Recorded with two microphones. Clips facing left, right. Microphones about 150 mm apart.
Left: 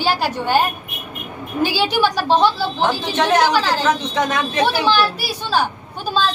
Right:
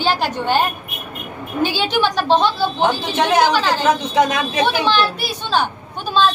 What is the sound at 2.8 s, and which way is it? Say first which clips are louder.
A woman's voice: right 1 dB; 15° right (ahead or behind).